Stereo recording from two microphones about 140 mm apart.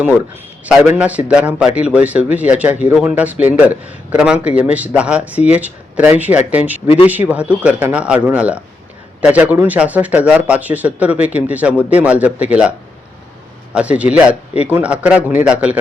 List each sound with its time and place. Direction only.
0.9 s speech: 10° right (ahead or behind)
6.8 s speech: 45° left (ahead or behind)
7.1 s speech: 10° right (ahead or behind)
13.7 s speech: 10° right (ahead or behind)